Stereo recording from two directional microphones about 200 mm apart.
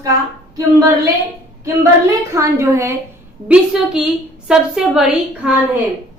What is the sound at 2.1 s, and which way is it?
A woman's voice, 15° right (ahead or behind).